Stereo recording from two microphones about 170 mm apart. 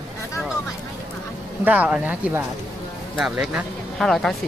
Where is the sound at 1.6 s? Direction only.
10° right (ahead or behind).